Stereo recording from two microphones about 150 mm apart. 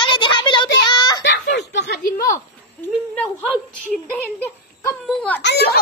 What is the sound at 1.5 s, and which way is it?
Chuckle, 90° left.